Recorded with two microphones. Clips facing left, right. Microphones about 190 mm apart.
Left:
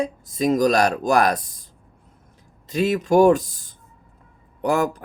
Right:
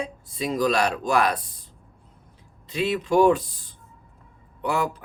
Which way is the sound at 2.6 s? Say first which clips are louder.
Left 4 dB; 45° left (ahead or behind).